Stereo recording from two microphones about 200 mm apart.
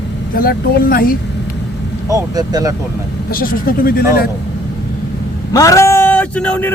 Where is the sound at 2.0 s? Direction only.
15° right (ahead or behind).